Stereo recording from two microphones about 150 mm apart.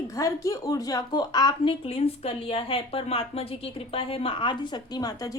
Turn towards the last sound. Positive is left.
turn(degrees=25)  # may be behind; listen again after turning